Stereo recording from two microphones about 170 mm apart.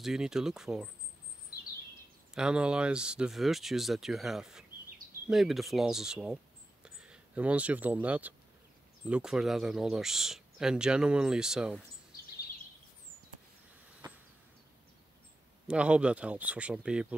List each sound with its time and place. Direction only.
0.0 s speech: centre (ahead or behind)
2.3 s speech: 5° right (ahead or behind)
14.0 s a sound: 25° right (ahead or behind)
15.6 s speech: 5° right (ahead or behind)